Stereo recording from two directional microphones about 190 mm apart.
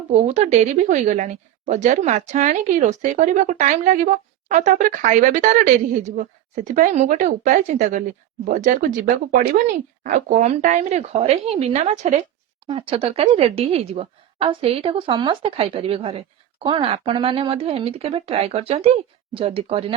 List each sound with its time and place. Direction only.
0.1 s a woman's voice: 35° right (ahead or behind)